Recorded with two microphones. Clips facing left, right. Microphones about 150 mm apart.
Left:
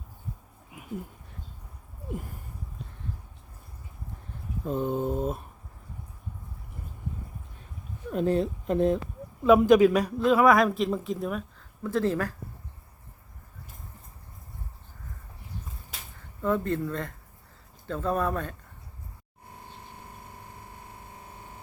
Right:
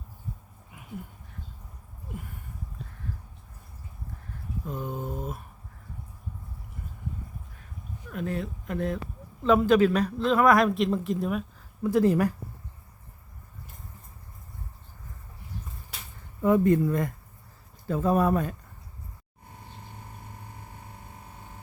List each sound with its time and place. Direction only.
4.6 s speech: 25° left (ahead or behind)
8.1 s speech: 30° left (ahead or behind)
9.4 s speech: 15° left (ahead or behind)
11.8 s speech: 15° right (ahead or behind)
16.4 s speech: 15° right (ahead or behind)